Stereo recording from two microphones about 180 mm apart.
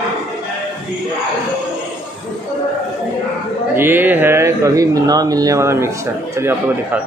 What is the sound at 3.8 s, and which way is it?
Speech, 10° right (ahead or behind).